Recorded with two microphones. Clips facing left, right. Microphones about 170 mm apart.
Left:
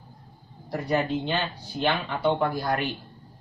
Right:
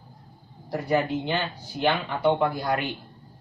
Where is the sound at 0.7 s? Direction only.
10° right (ahead or behind).